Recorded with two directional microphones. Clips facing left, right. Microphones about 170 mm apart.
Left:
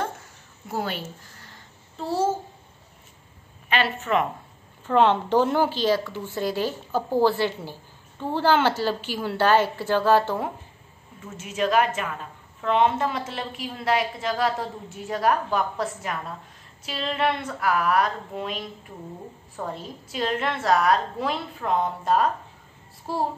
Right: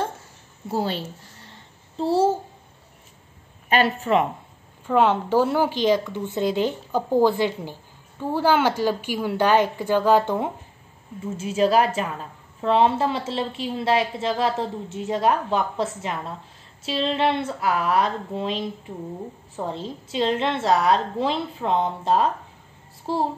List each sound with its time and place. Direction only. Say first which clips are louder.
0.7 s a child's voice: right 4 dB; 30° right (ahead or behind)
3.6 s a woman's voice: right 4 dB; 40° right (ahead or behind)
4.8 s speech: even; 10° right (ahead or behind)
11.2 s a woman's voice: right 5 dB; 30° right (ahead or behind)